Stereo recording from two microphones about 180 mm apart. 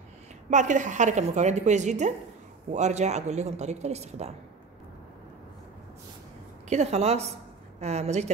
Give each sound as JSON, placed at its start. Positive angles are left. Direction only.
{"t": 0.5, "sound": "a woman's voice", "side_deg": -45}
{"t": 6.7, "sound": "a woman's voice", "side_deg": -35}